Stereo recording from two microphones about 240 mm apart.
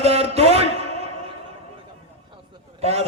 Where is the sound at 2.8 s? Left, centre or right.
Right.